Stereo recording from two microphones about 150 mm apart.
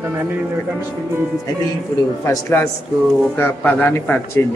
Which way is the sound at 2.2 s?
20° left (ahead or behind).